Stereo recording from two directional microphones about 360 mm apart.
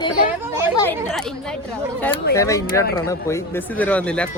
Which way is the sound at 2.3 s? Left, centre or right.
Centre.